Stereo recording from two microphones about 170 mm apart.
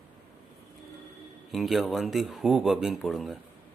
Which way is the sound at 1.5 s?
Centre (ahead or behind).